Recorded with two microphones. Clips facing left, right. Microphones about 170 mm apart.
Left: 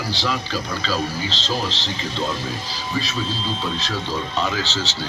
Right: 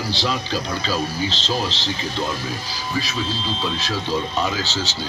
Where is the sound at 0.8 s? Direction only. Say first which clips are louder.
Right 1 dB; 15° right (ahead or behind).